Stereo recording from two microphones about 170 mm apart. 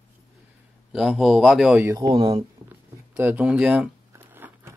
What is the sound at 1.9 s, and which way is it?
Speech, 30° right (ahead or behind).